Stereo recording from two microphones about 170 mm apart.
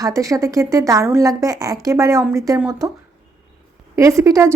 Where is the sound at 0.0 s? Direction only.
20° right (ahead or behind).